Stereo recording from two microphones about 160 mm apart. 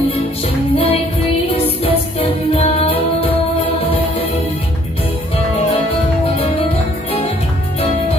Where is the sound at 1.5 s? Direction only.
35° left (ahead or behind).